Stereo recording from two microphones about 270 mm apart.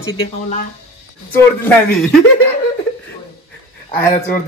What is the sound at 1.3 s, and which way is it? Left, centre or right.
Speech, centre.